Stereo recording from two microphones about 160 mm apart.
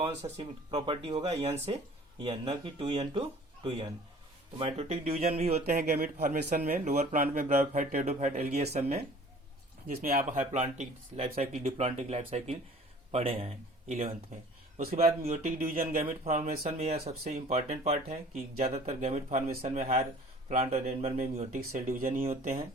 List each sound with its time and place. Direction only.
0.2 s speech: 35° right (ahead or behind); by 7.5 s 55° right (ahead or behind)
7.7 s speech: 45° right (ahead or behind)
10.0 s speech: 55° right (ahead or behind)
15.2 s speech: 45° right (ahead or behind)
15.5 s speech: 60° right (ahead or behind)
17.1 s speech: 45° right (ahead or behind)
21.5 s speech: 55° right (ahead or behind)